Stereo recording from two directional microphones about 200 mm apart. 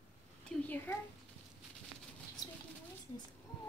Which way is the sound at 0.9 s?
15° left (ahead or behind).